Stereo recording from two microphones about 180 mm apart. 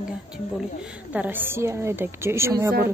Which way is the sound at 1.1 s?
10° right (ahead or behind).